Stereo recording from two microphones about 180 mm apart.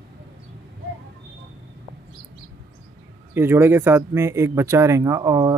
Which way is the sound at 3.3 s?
15° right (ahead or behind).